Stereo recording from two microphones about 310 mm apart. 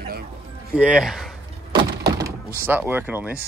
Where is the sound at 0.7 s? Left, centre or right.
Centre.